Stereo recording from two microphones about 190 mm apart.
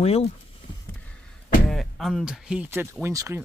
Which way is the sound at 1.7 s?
Centre (ahead or behind).